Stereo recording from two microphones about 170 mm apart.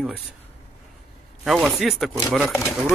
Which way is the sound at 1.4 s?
Centre (ahead or behind).